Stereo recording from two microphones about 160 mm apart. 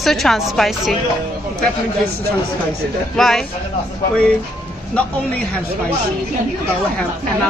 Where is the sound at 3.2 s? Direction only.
Centre (ahead or behind).